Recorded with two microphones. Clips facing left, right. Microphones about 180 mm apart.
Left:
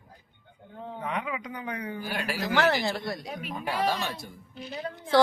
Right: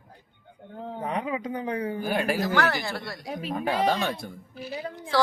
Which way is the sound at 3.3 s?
30° right (ahead or behind).